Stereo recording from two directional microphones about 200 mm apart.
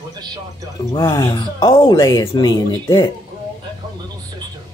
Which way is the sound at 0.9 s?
15° left (ahead or behind).